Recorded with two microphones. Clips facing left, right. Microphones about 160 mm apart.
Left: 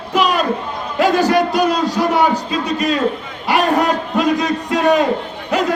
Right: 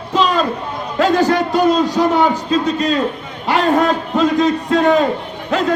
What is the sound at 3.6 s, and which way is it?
A man's voice, 15° left (ahead or behind).